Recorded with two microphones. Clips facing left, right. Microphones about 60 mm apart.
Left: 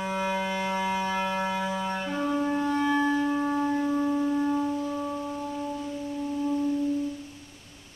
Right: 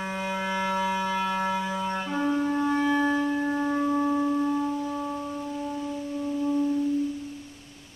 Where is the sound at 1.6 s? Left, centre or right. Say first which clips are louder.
Right 1 dB; centre.